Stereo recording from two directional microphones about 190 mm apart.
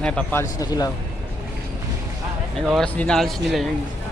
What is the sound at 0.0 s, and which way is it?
Speech, 5° left (ahead or behind).